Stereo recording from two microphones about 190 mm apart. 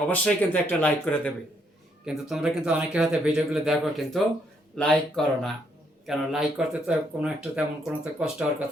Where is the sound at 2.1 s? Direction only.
5° right (ahead or behind).